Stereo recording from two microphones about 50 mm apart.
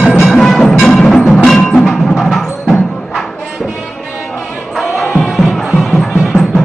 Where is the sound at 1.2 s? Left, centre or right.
Centre.